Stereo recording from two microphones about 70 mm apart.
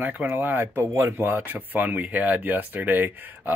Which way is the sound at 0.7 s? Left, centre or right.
Right.